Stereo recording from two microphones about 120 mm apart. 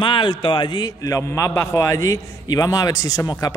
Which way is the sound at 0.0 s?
40° left (ahead or behind).